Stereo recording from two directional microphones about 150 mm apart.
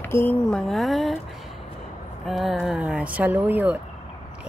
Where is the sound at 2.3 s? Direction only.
Centre (ahead or behind).